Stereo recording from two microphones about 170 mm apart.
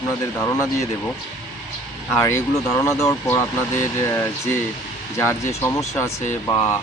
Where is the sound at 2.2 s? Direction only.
15° left (ahead or behind).